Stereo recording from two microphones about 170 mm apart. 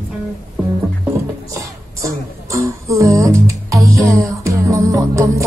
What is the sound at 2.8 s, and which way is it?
Music, 20° right (ahead or behind).